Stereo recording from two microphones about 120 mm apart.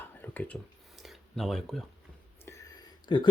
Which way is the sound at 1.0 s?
Centre (ahead or behind).